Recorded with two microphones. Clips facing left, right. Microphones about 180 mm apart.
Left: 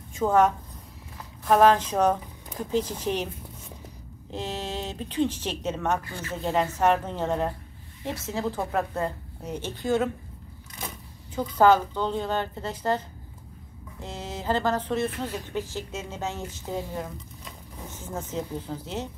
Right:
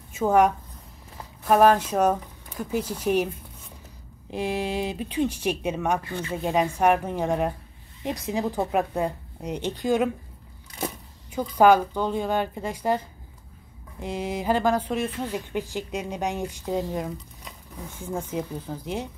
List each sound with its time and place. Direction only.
0.1 s a woman's voice: 10° right (ahead or behind)
1.5 s speech: 10° right (ahead or behind)
4.3 s speech: 10° right (ahead or behind)
11.3 s speech: 15° right (ahead or behind)
14.0 s speech: 15° right (ahead or behind)